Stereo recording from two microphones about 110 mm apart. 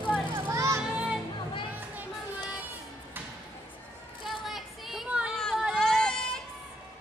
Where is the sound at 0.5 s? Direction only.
25° right (ahead or behind).